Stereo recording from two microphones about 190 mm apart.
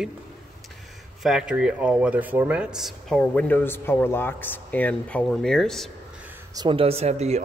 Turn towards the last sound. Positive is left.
turn(degrees=-35)  # may be behind; listen again after turning